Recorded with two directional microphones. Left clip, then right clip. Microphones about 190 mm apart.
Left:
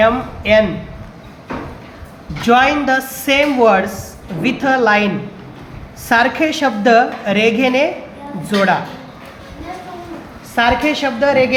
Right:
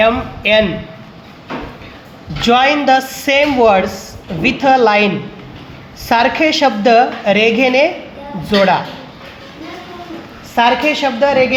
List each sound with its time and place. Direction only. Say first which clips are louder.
0.0 s a woman's voice: right 1 dB; 25° right (ahead or behind)
2.4 s a woman's voice: right 1 dB; 20° right (ahead or behind)
10.5 s a woman's voice: right 2 dB; 15° right (ahead or behind)